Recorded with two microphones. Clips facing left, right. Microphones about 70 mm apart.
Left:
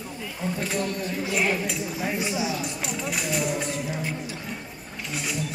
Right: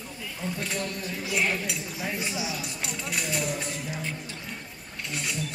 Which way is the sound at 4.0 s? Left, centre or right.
Centre.